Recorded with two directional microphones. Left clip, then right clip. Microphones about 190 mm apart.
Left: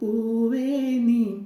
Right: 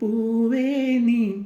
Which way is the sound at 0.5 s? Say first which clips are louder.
Right 2 dB; 65° right (ahead or behind).